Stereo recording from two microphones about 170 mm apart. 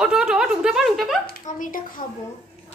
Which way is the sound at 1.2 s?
55° left (ahead or behind).